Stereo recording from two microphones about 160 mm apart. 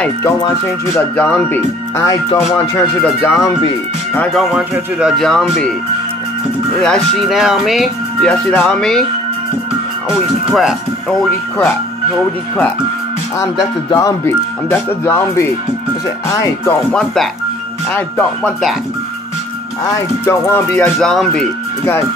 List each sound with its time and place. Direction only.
0.9 s speech: 10° left (ahead or behind)
4.2 s speech: centre (ahead or behind)
6.8 s speech: centre (ahead or behind)
10.5 s speech: centre (ahead or behind)
13.8 s speech: 25° left (ahead or behind)
16.6 s speech: 5° left (ahead or behind)
20.2 s speech: 15° left (ahead or behind)